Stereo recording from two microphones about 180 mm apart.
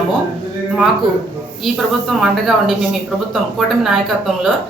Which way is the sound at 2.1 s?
Centre (ahead or behind).